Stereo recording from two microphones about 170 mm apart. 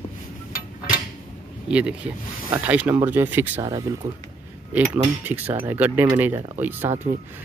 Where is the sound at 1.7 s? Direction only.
5° right (ahead or behind).